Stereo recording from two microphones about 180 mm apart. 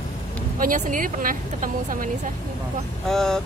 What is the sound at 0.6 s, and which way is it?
Speech, 50° right (ahead or behind).